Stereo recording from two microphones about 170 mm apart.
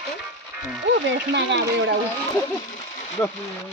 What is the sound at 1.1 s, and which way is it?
Speech, 90° right.